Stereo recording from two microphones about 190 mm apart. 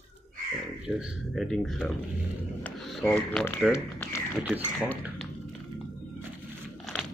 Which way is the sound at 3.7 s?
15° left (ahead or behind).